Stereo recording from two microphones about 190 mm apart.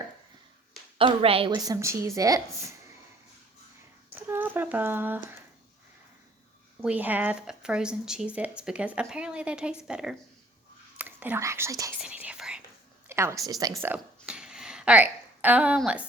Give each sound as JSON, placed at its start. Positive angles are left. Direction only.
{"t": 0.9, "sound": "a woman's voice", "side_deg": -30}
{"t": 4.1, "sound": "speech", "side_deg": -10}
{"t": 6.8, "sound": "speech", "side_deg": -10}
{"t": 12.0, "sound": "whispering", "side_deg": -5}
{"t": 13.1, "sound": "speech", "side_deg": -15}
{"t": 13.9, "sound": "a sound", "side_deg": -5}